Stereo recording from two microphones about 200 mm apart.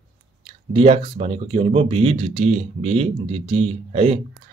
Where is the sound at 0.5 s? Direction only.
30° right (ahead or behind).